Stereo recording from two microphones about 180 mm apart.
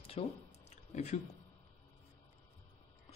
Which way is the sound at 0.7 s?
40° left (ahead or behind).